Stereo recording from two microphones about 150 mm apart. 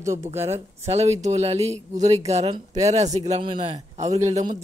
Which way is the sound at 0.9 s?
45° right (ahead or behind).